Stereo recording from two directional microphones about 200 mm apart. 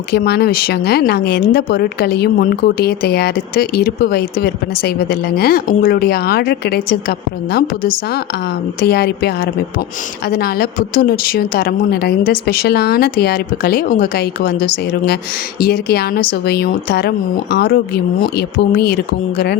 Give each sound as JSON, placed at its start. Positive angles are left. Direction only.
{"t": 0.1, "sound": "speech", "side_deg": 50}